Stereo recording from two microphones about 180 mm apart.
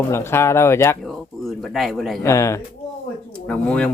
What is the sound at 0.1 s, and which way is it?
Speech, 15° left (ahead or behind).